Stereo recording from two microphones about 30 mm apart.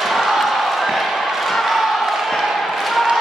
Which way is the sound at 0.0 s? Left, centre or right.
Centre.